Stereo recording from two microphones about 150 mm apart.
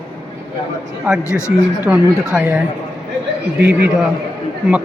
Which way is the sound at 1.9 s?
5° right (ahead or behind).